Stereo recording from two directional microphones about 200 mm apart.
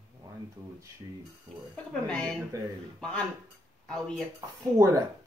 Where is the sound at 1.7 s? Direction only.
5° left (ahead or behind).